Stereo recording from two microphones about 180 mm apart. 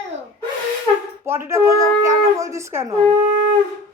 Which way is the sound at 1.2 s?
15° right (ahead or behind).